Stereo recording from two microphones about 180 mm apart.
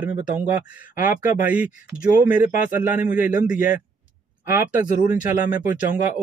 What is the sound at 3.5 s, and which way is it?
Speech, 50° left (ahead or behind).